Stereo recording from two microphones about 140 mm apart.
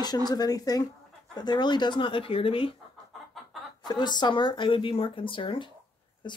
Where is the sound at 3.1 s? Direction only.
Centre (ahead or behind).